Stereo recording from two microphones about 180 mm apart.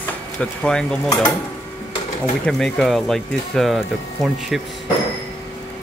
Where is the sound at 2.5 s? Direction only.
Centre (ahead or behind).